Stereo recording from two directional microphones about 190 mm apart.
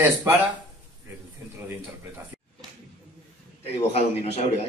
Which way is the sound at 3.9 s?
35° left (ahead or behind).